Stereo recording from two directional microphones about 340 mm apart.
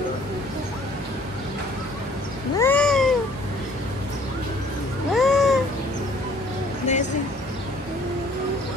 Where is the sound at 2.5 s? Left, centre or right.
Centre.